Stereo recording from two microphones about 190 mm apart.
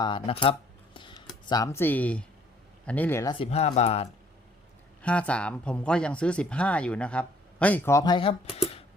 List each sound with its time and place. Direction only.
0.0 s speech: 25° left (ahead or behind)
0.9 s a sound: 25° left (ahead or behind)
1.5 s speech: 20° left (ahead or behind)
3.3 s speech: 30° left (ahead or behind)
5.0 s speech: 5° left (ahead or behind); by 8.8 s 35° left (ahead or behind)